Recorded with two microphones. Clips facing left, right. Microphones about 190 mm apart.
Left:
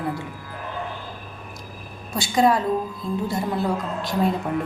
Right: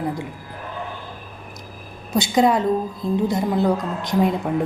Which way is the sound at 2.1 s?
20° right (ahead or behind).